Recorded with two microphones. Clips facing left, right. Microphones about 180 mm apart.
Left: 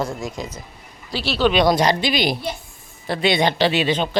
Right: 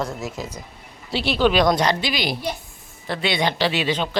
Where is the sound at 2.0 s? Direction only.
20° left (ahead or behind).